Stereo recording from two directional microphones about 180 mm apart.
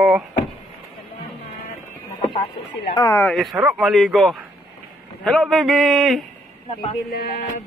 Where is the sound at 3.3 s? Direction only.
Centre (ahead or behind).